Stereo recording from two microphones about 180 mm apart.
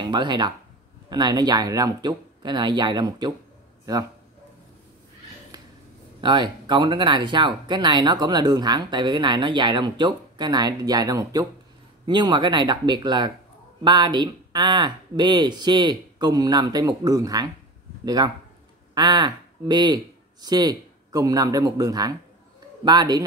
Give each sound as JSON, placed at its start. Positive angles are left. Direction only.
{"t": 0.0, "sound": "speech", "side_deg": -25}
{"t": 6.2, "sound": "speech", "side_deg": -25}